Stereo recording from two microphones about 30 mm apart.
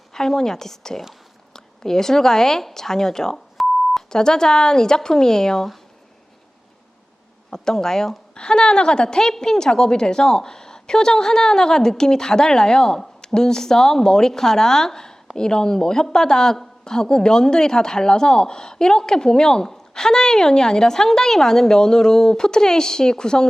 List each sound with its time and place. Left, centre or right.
0.1 s a woman's voice: centre
7.5 s a woman's voice: left
8.4 s a woman's voice: left